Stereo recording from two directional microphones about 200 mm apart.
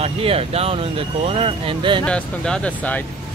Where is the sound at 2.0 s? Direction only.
5° left (ahead or behind).